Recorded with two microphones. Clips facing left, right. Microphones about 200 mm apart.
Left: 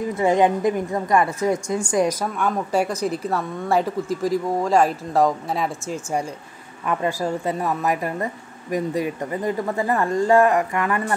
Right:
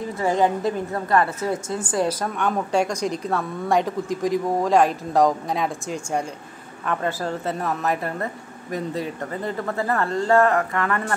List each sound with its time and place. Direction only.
0.2 s a woman's voice: 20° left (ahead or behind)